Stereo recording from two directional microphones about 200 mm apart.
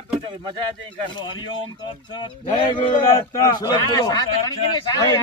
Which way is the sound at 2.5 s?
25° left (ahead or behind).